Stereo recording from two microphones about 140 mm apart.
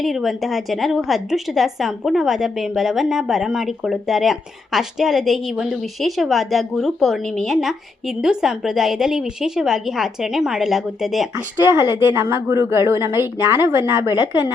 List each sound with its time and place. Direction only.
0.0 s a woman's voice: centre (ahead or behind)
11.6 s speech: 20° right (ahead or behind)